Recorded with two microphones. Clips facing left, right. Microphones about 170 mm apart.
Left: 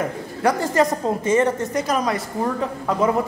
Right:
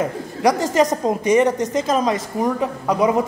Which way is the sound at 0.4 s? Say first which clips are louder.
Right 2 dB; 15° right (ahead or behind).